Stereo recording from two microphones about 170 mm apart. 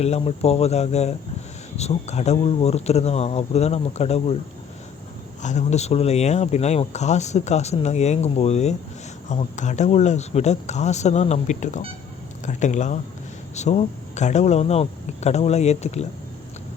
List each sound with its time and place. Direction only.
0.0 s speech: 40° left (ahead or behind)
5.4 s speech: 45° left (ahead or behind)